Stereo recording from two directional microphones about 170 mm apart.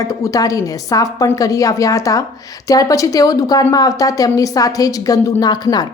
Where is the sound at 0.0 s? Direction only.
20° left (ahead or behind).